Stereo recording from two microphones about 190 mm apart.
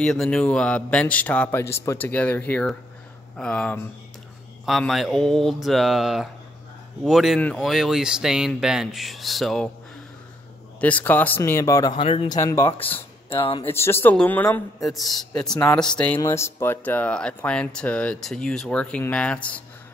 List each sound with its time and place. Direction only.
0.0 s speech: 5° left (ahead or behind)
10.8 s speech: 10° left (ahead or behind); by 12.4 s 30° left (ahead or behind)
12.4 s speech: 15° left (ahead or behind)
13.3 s speech: 30° left (ahead or behind)
13.7 s speech: 15° left (ahead or behind)